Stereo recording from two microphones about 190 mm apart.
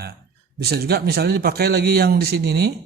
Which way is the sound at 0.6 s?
55° right (ahead or behind).